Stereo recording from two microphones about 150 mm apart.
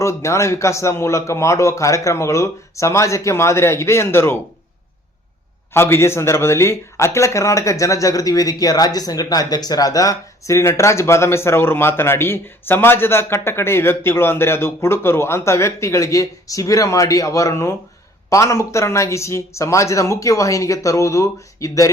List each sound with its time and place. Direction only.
0.0 s speech: 20° left (ahead or behind)
5.7 s speech: 15° left (ahead or behind)